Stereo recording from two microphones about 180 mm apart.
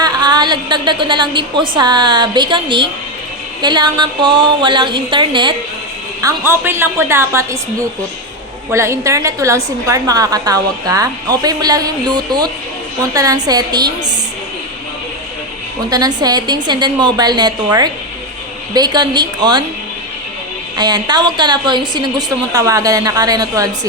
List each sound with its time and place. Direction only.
0.0 s a woman's voice: 20° right (ahead or behind)
6.2 s a woman's voice: 10° right (ahead or behind)
15.9 s a woman's voice: 20° right (ahead or behind)
20.7 s a woman's voice: 25° right (ahead or behind)